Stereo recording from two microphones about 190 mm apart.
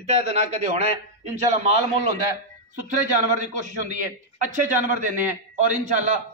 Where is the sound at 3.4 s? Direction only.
40° right (ahead or behind).